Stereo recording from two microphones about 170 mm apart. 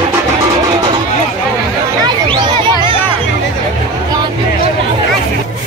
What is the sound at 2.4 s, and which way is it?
Music, 25° right (ahead or behind).